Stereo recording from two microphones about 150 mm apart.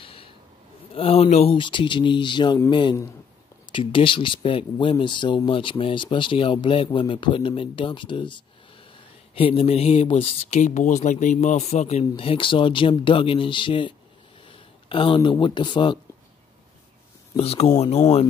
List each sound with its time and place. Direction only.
0.0 s snort: 40° left (ahead or behind)
0.9 s speech: 40° left (ahead or behind)
17.4 s speech: 40° left (ahead or behind)